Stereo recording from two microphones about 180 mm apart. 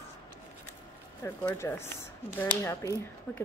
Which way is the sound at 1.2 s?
15° left (ahead or behind).